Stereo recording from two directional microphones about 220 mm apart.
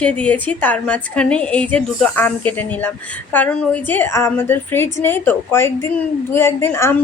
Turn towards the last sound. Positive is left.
turn(degrees=10)  # may be behind; listen again after turning